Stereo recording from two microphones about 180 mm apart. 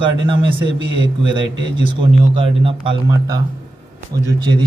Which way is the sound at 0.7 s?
90° right.